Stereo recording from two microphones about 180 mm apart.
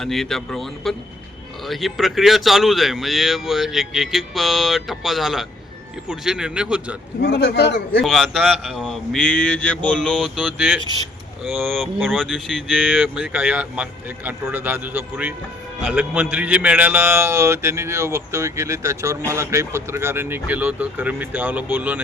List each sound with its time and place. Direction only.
0.0 s speech: centre (ahead or behind)
7.2 s a man's voice: 65° left (ahead or behind)
8.0 s a man's voice: centre (ahead or behind)